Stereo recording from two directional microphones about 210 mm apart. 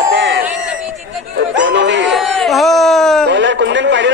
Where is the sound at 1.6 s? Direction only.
60° right (ahead or behind).